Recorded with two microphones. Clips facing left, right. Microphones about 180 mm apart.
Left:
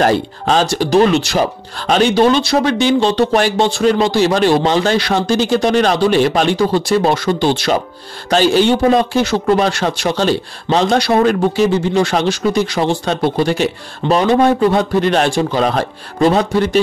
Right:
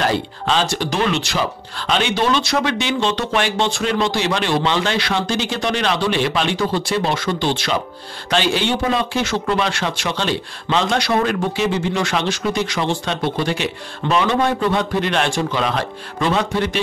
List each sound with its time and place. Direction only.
0.0 s a man's voice: 45° left (ahead or behind)